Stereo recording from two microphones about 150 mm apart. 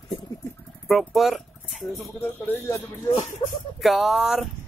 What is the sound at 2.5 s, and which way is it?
Speech, 15° left (ahead or behind).